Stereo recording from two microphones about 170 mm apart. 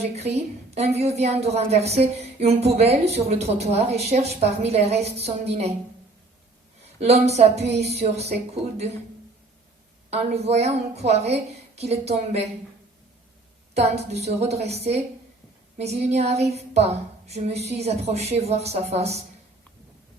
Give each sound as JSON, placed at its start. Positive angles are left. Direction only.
{"t": 0.0, "sound": "a woman's voice", "side_deg": -40}
{"t": 7.0, "sound": "a woman's voice", "side_deg": -40}
{"t": 10.1, "sound": "a woman's voice", "side_deg": -40}
{"t": 13.7, "sound": "a woman's voice", "side_deg": -40}